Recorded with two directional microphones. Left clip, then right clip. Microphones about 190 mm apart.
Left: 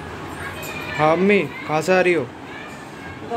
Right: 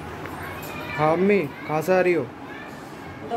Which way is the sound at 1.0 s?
5° right (ahead or behind).